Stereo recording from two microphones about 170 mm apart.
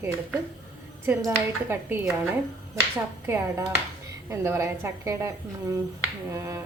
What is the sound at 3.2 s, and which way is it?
A woman's voice, 15° right (ahead or behind).